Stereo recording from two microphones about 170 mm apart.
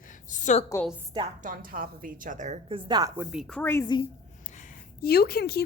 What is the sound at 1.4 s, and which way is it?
A woman's voice, 55° right (ahead or behind).